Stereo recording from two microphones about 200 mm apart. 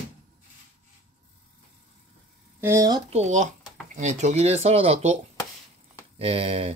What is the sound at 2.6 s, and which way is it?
Speech, 15° right (ahead or behind).